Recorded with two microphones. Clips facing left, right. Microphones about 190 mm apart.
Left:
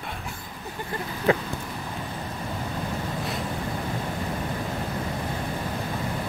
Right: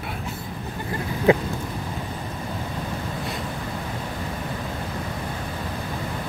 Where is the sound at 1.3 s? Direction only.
15° right (ahead or behind).